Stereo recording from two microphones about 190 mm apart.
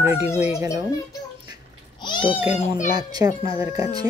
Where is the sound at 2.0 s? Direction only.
25° left (ahead or behind).